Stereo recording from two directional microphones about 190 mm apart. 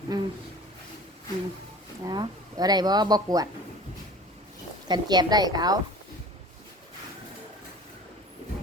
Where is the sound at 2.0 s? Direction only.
20° right (ahead or behind).